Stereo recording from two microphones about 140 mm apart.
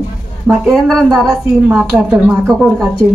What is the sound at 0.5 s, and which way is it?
A woman's voice, centre (ahead or behind).